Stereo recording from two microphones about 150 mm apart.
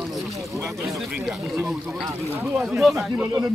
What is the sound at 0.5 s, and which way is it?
Speech, 20° right (ahead or behind).